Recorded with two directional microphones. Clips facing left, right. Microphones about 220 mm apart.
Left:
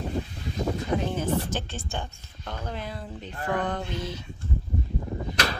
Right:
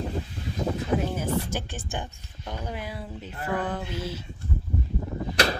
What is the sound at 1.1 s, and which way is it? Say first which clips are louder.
Speech: left 1 dB; 10° right (ahead or behind).